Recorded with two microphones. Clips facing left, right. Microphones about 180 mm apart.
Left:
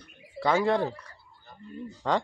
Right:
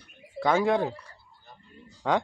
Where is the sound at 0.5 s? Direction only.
10° right (ahead or behind).